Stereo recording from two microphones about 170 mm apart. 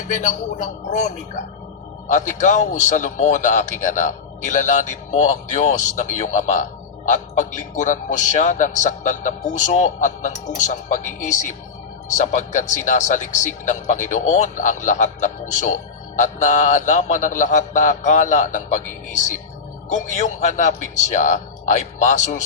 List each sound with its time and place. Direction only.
0.1 s a man's voice: 45° left (ahead or behind)
2.1 s a man's voice: 45° left (ahead or behind)